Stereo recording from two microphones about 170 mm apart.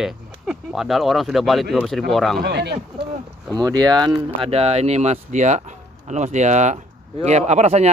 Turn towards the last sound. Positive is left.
turn(degrees=-40)  # may be behind; listen again after turning